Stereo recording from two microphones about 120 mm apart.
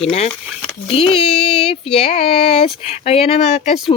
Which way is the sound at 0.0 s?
55° left (ahead or behind).